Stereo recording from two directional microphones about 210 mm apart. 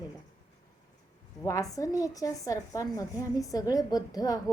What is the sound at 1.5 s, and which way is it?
A woman's voice, 15° left (ahead or behind).